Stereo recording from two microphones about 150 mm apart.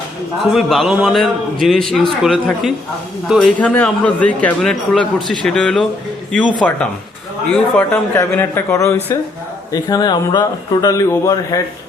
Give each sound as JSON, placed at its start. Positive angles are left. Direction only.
{"t": 0.5, "sound": "a man's voice", "side_deg": 0}